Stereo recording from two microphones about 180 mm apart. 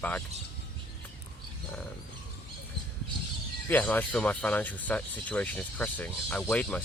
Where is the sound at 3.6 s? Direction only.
10° left (ahead or behind).